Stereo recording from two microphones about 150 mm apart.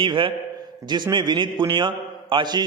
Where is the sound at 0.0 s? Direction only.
30° right (ahead or behind).